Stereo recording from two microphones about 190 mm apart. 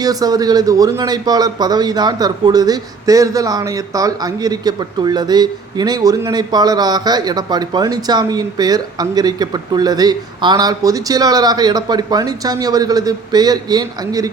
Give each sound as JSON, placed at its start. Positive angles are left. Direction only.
{"t": 0.0, "sound": "a man's voice", "side_deg": -20}